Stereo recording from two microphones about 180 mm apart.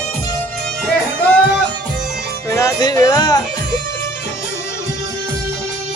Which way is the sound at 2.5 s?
15° left (ahead or behind).